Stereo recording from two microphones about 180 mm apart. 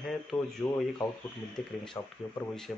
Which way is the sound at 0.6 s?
10° left (ahead or behind).